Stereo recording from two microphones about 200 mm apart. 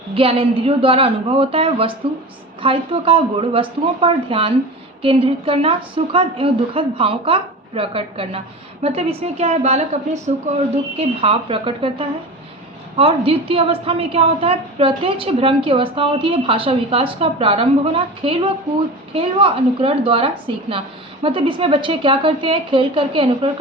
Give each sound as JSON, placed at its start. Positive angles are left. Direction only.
{"t": 0.1, "sound": "a woman's voice", "side_deg": -30}